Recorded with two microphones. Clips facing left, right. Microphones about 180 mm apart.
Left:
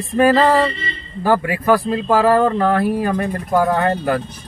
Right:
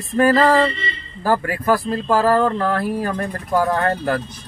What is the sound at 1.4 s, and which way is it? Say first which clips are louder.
Speech: left 3 dB; 15° left (ahead or behind).